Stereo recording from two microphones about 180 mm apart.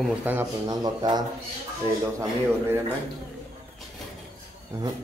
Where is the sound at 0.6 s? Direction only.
20° right (ahead or behind).